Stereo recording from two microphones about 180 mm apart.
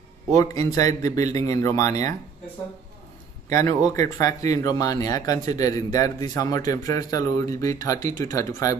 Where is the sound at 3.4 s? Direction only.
15° left (ahead or behind).